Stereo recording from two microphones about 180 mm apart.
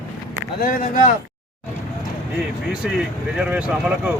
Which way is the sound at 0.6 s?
50° left (ahead or behind).